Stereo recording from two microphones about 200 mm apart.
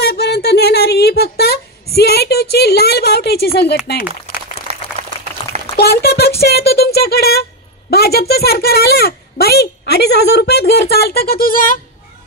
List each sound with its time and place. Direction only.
0.0 s a sound: 55° left (ahead or behind)
3.8 s a woman's voice: 50° left (ahead or behind)
5.8 s a woman's voice: 50° left (ahead or behind)